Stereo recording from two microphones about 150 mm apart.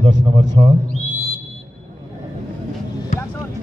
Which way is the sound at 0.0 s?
30° right (ahead or behind).